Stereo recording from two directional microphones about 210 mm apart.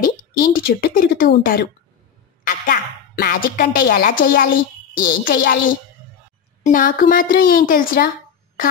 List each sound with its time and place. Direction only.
0.0 s a woman's voice: 45° left (ahead or behind)
6.6 s a woman's voice: 40° left (ahead or behind)